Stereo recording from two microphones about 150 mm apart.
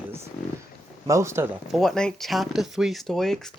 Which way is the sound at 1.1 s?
20° right (ahead or behind).